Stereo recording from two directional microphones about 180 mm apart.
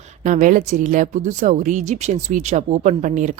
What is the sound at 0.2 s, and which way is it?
Speech, 45° right (ahead or behind).